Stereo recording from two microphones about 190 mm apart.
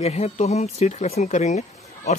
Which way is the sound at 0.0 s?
35° left (ahead or behind).